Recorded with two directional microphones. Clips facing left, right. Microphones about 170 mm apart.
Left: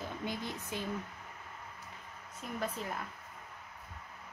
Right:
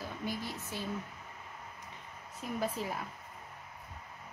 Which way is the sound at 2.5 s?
5° right (ahead or behind).